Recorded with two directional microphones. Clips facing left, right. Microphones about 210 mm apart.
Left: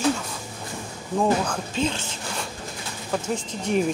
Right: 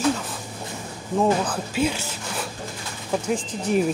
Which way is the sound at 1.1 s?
5° right (ahead or behind).